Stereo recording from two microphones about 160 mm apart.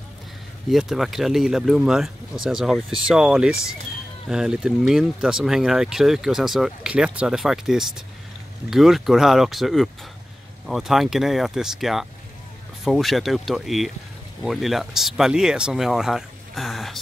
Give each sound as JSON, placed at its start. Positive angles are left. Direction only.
{"t": 0.7, "sound": "speech", "side_deg": 0}